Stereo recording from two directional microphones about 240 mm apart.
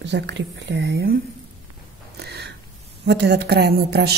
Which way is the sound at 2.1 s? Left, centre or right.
Right.